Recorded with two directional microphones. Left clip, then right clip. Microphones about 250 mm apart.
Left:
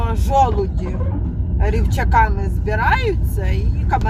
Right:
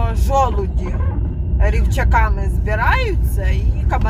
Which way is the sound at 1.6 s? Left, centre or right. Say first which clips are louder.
Even; right.